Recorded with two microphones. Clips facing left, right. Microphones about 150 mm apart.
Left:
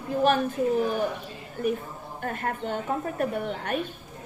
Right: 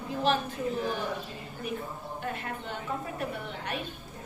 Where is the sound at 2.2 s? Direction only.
50° left (ahead or behind).